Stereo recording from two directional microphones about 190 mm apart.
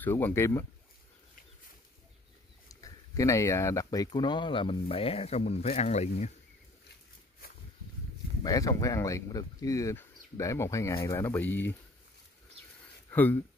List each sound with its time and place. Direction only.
0.0 s speech: 10° left (ahead or behind)
2.7 s speech: 15° left (ahead or behind); by 6.3 s 35° left (ahead or behind)
8.5 s speech: 20° left (ahead or behind)
13.1 s speech: 10° left (ahead or behind)